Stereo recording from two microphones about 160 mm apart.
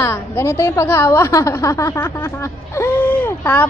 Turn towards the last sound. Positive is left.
turn(degrees=10)  # may be behind; listen again after turning